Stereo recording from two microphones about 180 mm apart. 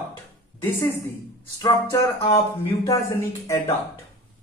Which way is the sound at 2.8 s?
15° left (ahead or behind).